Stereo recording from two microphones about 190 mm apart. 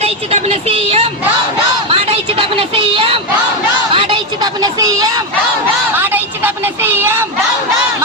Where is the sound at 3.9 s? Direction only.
25° right (ahead or behind).